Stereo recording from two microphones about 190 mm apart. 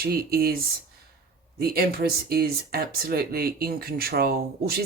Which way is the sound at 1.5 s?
50° right (ahead or behind).